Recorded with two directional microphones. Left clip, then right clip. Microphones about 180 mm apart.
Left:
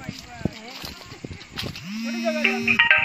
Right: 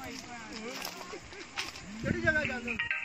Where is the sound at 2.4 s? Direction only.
50° left (ahead or behind).